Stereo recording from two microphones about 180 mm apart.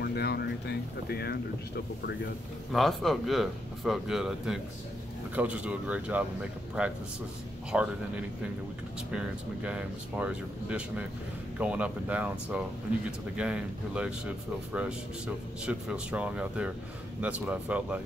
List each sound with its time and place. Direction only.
0.0 s speech: 60° left (ahead or behind)
2.7 s speech: centre (ahead or behind)
9.1 s speech: 5° right (ahead or behind)